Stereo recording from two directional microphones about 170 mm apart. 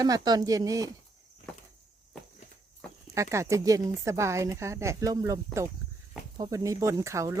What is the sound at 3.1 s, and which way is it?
A woman's voice, 15° right (ahead or behind).